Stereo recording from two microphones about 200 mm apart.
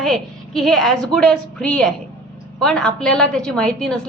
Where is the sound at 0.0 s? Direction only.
Centre (ahead or behind).